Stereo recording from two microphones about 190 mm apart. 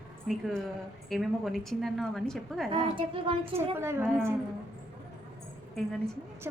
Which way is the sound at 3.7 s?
15° right (ahead or behind).